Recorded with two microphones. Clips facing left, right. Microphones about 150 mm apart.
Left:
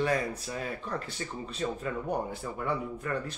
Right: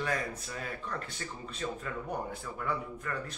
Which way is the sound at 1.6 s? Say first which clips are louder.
Left 4 dB; 30° left (ahead or behind).